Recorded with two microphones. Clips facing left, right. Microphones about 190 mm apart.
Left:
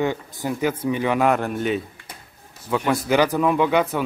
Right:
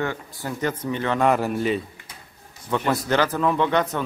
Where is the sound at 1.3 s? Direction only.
Centre (ahead or behind).